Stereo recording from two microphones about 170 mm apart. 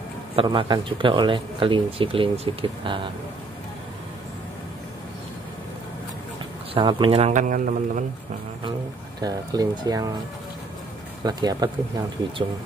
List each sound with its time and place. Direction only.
0.4 s speech: 30° right (ahead or behind)
6.7 s speech: 30° right (ahead or behind); by 8.0 s 50° right (ahead or behind)
9.2 s speech: 20° right (ahead or behind)
11.2 s speech: 25° right (ahead or behind)